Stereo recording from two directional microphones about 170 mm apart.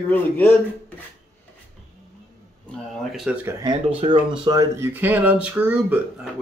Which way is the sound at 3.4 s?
20° right (ahead or behind).